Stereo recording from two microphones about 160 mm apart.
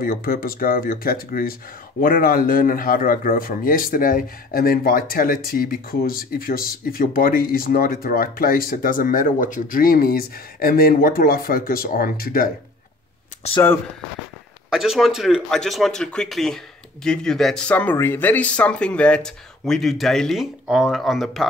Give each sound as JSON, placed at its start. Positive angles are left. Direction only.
{"t": 0.0, "sound": "speech", "side_deg": 65}
{"t": 14.7, "sound": "speech", "side_deg": 0}